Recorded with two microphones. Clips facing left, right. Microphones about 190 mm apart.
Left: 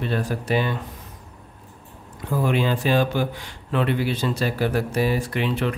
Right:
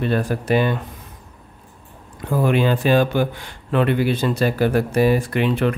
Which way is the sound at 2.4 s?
55° right (ahead or behind).